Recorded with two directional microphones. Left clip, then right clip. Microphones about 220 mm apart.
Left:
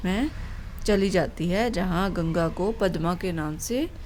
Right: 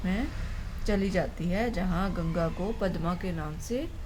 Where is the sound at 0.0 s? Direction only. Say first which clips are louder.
Left 6 dB; 50° left (ahead or behind).